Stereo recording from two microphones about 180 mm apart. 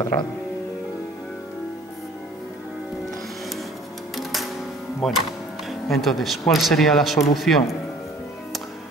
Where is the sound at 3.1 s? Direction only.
Centre (ahead or behind).